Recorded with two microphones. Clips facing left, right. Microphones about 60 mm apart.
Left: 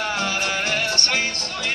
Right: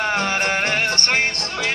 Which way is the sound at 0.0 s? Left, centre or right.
Right.